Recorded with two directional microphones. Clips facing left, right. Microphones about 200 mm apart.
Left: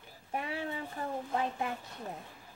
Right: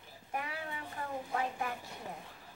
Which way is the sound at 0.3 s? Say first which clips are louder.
Left 4 dB; 25° left (ahead or behind).